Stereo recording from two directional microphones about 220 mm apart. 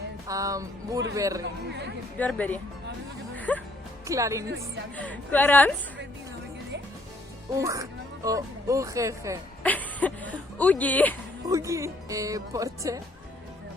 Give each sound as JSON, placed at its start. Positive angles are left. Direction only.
{"t": 0.3, "sound": "speech", "side_deg": -15}
{"t": 2.1, "sound": "speech", "side_deg": 5}
{"t": 3.3, "sound": "music", "side_deg": 5}
{"t": 4.0, "sound": "speech", "side_deg": -15}
{"t": 4.9, "sound": "speech", "side_deg": 5}
{"t": 7.5, "sound": "speech", "side_deg": -15}
{"t": 9.6, "sound": "speech", "side_deg": 5}
{"t": 11.4, "sound": "speech", "side_deg": -15}